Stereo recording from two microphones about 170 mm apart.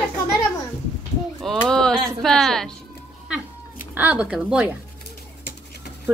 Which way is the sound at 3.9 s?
10° right (ahead or behind).